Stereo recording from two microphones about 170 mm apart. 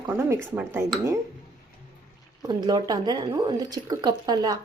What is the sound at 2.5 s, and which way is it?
Speech, 25° right (ahead or behind).